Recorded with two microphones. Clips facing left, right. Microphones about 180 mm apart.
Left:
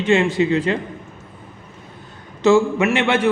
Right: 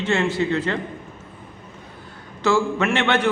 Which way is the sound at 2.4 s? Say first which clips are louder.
Left 5 dB; 20° left (ahead or behind).